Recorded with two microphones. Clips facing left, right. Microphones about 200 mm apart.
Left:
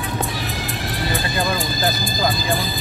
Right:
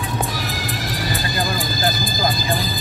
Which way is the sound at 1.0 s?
40° right (ahead or behind).